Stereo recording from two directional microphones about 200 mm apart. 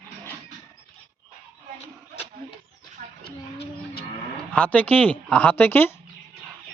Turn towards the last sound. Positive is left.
turn(degrees=10)  # may be behind; listen again after turning